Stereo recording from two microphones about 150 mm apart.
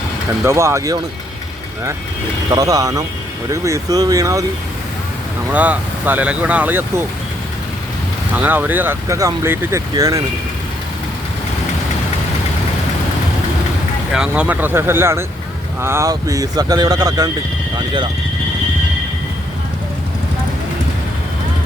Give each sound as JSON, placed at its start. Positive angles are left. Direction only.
{"t": 0.4, "sound": "speech", "side_deg": -20}
{"t": 2.5, "sound": "speech", "side_deg": -25}
{"t": 5.5, "sound": "speech", "side_deg": -10}
{"t": 8.4, "sound": "speech", "side_deg": -10}
{"t": 14.1, "sound": "speech", "side_deg": -5}